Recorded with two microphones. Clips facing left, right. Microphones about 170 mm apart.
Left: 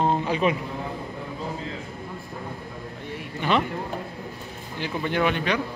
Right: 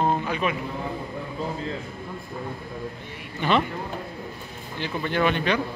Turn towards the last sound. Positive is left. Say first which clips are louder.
# right 1 dB
turn(degrees=10)  # may be behind; listen again after turning